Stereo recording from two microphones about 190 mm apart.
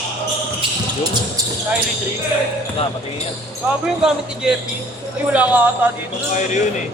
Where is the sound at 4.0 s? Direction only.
5° right (ahead or behind).